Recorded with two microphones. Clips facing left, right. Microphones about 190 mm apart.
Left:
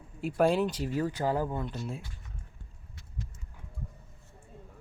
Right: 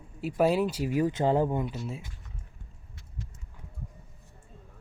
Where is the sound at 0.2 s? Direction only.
5° right (ahead or behind); by 1.6 s 20° right (ahead or behind).